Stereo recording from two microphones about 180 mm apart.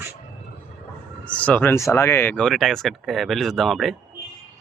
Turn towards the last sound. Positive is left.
turn(degrees=0)  # may be behind; listen again after turning